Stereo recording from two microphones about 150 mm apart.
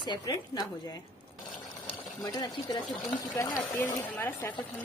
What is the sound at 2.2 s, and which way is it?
Speech, 25° left (ahead or behind).